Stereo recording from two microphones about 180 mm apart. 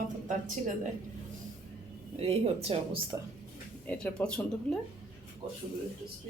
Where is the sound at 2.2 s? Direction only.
35° right (ahead or behind).